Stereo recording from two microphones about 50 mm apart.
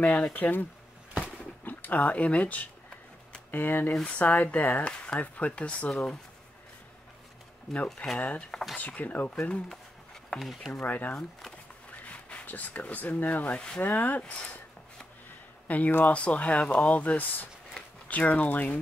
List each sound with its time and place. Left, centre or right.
0.1 s speech: left
1.2 s a sound: left
3.5 s speech: left
4.0 s speech: left
4.4 s speech: left
4.8 s speech: left
5.9 s speech: centre
8.2 s speech: left
9.3 s speech: centre
10.3 s speech: centre
10.9 s speech: left
15.7 s speech: left
16.1 s speech: left
17.0 s speech: left